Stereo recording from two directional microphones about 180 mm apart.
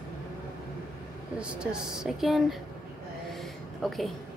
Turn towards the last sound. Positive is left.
turn(degrees=0)  # may be behind; listen again after turning